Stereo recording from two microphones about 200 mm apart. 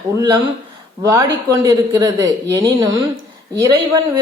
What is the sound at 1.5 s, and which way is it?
A woman's voice, 15° right (ahead or behind).